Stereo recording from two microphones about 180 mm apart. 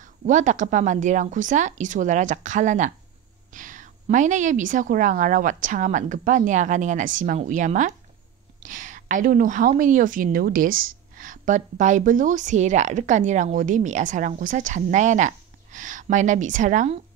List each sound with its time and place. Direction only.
0.0 s a woman's voice: 45° right (ahead or behind)